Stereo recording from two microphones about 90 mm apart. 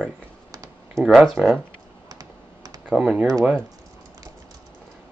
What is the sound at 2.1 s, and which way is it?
Computer keyboard, 45° right (ahead or behind).